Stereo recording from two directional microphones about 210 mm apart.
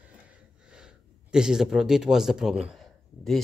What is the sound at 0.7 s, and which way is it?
Speech, 5° right (ahead or behind).